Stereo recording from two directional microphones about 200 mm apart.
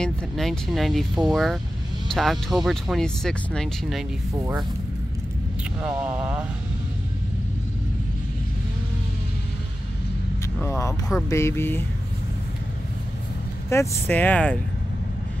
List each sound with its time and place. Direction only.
0.0 s speech: centre (ahead or behind)
4.4 s speech: 15° right (ahead or behind)
5.8 s speech: 5° right (ahead or behind)
10.6 s speech: 15° left (ahead or behind)
13.7 s speech: 10° left (ahead or behind)